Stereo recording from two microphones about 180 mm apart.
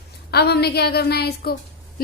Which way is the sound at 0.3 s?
65° left (ahead or behind).